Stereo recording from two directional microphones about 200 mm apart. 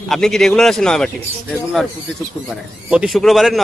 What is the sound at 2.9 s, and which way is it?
Speech, centre (ahead or behind).